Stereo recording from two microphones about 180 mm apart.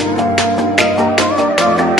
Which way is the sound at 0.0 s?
Centre (ahead or behind).